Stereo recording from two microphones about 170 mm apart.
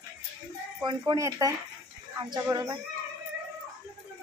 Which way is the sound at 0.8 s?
25° right (ahead or behind).